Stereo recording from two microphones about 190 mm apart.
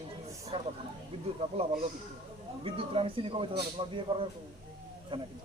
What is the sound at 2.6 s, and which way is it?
Speech, 30° right (ahead or behind).